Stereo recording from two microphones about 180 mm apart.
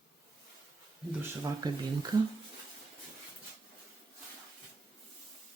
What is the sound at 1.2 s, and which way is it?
Speech, 20° right (ahead or behind).